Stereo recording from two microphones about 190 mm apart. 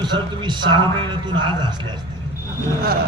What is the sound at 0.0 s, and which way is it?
A man's voice, 25° right (ahead or behind).